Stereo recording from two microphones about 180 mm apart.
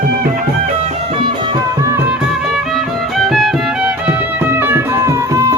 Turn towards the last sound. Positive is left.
turn(degrees=-15)  # may be behind; listen again after turning